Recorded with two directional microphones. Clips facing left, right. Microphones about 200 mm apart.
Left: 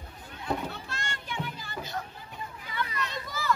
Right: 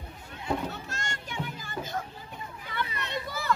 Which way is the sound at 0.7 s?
45° right (ahead or behind).